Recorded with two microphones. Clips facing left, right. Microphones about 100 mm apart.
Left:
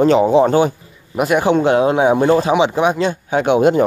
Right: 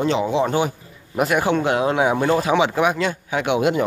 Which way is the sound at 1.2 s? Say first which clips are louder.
Left 4 dB; 25° left (ahead or behind).